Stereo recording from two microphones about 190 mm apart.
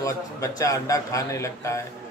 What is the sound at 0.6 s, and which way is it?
A man's voice, 15° left (ahead or behind).